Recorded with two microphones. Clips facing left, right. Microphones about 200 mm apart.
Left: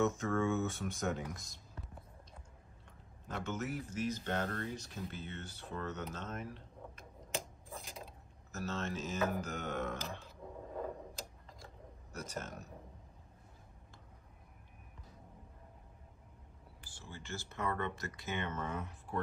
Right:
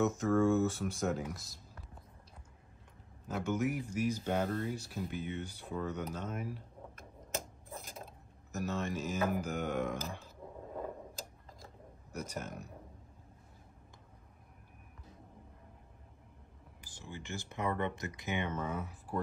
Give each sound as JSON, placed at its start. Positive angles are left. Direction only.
{"t": 0.0, "sound": "speech", "side_deg": 0}
{"t": 3.3, "sound": "speech", "side_deg": -10}
{"t": 7.0, "sound": "a sound", "side_deg": -50}
{"t": 8.5, "sound": "speech", "side_deg": -15}
{"t": 12.1, "sound": "speech", "side_deg": -15}
{"t": 17.0, "sound": "speech", "side_deg": -15}